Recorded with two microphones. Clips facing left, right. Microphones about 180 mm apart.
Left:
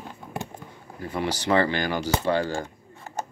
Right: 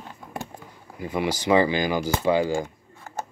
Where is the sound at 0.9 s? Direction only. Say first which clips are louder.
Right 2 dB; 10° right (ahead or behind).